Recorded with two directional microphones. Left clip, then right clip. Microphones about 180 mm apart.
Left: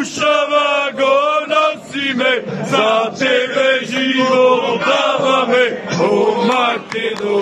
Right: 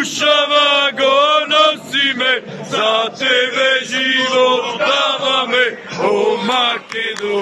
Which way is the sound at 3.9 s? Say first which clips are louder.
Even; 10° left (ahead or behind).